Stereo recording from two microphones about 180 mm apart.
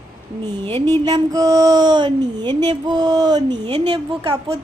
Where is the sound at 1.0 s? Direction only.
20° right (ahead or behind).